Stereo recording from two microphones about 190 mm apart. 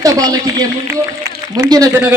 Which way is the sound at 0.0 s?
20° right (ahead or behind).